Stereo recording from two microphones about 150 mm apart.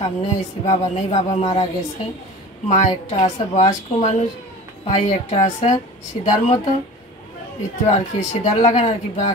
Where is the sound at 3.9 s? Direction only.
50° left (ahead or behind).